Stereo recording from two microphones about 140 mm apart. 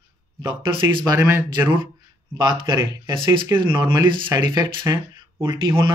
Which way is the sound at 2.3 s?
30° right (ahead or behind).